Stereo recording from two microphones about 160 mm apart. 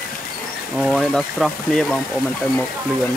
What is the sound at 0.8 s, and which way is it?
Speech, centre (ahead or behind).